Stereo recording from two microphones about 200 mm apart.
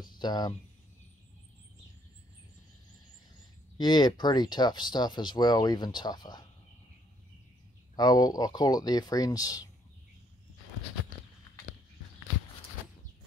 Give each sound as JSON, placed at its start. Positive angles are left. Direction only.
{"t": 0.2, "sound": "speech", "side_deg": 20}
{"t": 3.7, "sound": "speech", "side_deg": 20}
{"t": 7.9, "sound": "speech", "side_deg": 20}